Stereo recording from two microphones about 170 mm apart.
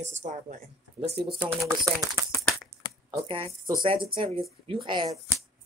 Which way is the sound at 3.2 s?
30° right (ahead or behind).